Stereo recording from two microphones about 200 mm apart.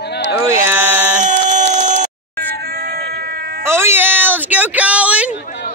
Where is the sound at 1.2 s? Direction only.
40° right (ahead or behind).